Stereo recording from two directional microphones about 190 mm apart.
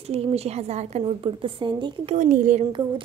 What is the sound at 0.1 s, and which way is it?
A woman's voice, 35° right (ahead or behind).